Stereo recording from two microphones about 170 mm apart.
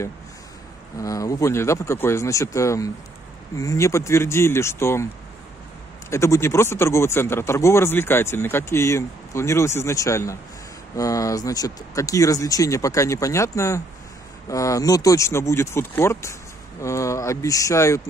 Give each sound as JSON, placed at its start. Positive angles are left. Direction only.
{"t": 0.9, "sound": "speech", "side_deg": 20}
{"t": 6.0, "sound": "speech", "side_deg": 15}